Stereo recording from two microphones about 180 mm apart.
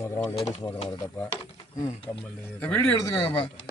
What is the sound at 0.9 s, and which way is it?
Speech, 20° left (ahead or behind).